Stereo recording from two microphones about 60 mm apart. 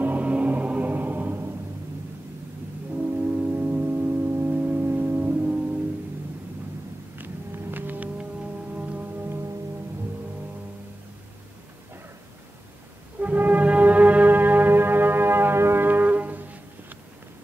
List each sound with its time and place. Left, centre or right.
0.0 s music: right
3.0 s music: right
5.4 s music: right
7.2 s music: right
13.2 s music: right